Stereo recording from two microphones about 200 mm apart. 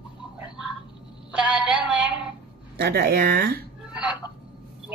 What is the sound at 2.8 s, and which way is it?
Speech, 55° right (ahead or behind).